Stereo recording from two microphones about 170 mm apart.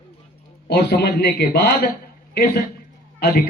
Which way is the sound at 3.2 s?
65° left (ahead or behind).